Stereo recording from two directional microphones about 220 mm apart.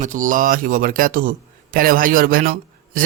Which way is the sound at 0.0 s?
35° right (ahead or behind).